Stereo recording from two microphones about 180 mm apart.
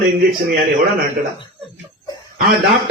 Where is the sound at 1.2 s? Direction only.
50° right (ahead or behind).